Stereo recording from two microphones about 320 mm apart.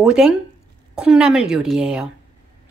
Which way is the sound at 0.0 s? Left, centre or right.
Centre.